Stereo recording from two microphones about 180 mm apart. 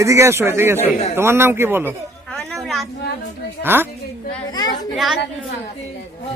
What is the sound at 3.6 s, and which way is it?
Speech, 10° right (ahead or behind).